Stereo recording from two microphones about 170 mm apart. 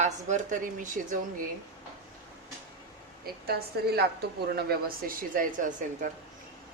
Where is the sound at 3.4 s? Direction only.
70° right (ahead or behind); by 6.1 s 50° right (ahead or behind).